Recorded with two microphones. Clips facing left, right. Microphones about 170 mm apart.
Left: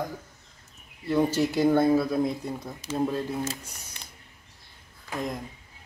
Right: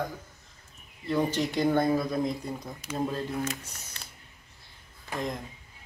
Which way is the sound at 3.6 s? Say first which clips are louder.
Left 1 dB; 10° left (ahead or behind).